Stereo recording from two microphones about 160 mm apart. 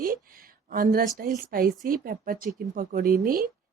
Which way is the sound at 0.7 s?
60° right (ahead or behind).